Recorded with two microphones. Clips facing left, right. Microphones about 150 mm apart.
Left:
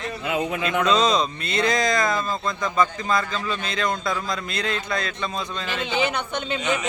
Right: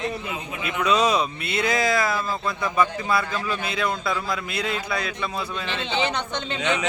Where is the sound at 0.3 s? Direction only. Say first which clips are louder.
Left 7 dB; 90° left.